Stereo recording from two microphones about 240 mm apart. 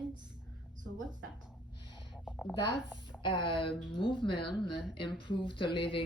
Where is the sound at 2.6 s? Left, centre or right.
Centre.